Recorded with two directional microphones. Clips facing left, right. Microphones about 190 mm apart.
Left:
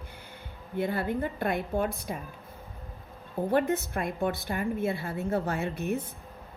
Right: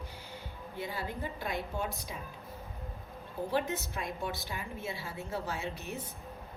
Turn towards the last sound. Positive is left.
turn(degrees=55)  # may be behind; listen again after turning